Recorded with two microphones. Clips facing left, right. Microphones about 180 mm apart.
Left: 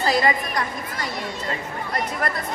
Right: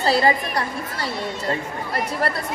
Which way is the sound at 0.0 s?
30° right (ahead or behind).